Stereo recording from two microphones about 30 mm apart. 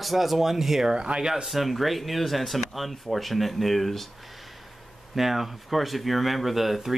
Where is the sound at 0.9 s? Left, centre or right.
Right.